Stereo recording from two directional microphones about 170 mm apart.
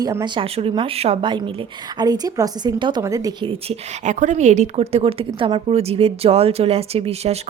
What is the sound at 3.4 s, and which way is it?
A woman's voice, 40° right (ahead or behind).